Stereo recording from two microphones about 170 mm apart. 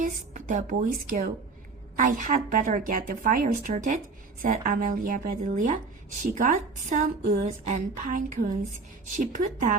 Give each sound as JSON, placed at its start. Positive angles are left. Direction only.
{"t": 0.0, "sound": "a woman's voice", "side_deg": -50}